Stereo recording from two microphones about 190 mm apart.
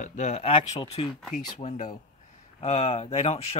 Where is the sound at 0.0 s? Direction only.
40° left (ahead or behind).